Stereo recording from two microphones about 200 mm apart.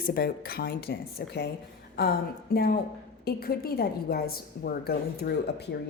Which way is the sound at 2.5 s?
50° left (ahead or behind).